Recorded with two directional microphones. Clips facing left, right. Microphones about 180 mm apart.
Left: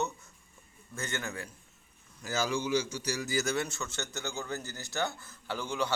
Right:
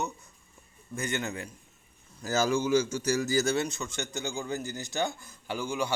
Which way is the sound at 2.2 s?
45° right (ahead or behind).